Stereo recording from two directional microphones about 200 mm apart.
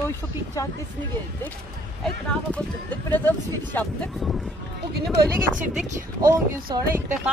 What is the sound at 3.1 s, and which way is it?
Speech, 10° left (ahead or behind).